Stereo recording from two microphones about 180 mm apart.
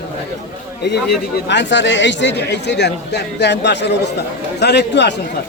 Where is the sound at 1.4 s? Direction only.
80° left.